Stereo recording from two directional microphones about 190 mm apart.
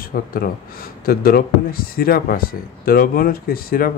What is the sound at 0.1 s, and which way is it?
A man's voice, 50° left (ahead or behind).